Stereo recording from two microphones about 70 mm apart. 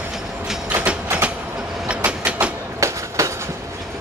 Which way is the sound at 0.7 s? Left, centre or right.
Right.